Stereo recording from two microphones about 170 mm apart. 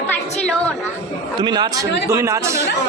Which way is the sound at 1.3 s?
25° right (ahead or behind).